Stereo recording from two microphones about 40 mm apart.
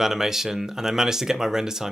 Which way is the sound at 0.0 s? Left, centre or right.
Centre.